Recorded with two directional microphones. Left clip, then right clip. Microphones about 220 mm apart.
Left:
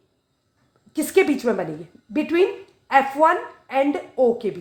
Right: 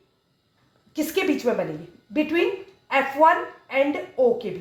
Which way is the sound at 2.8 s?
45° left (ahead or behind).